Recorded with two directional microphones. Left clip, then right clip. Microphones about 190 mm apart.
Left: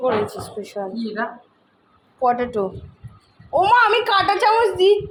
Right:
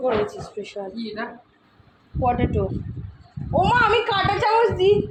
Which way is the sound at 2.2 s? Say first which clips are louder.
Left 3 dB; 20° left (ahead or behind).